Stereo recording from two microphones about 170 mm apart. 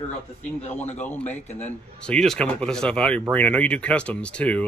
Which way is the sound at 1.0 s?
10° left (ahead or behind).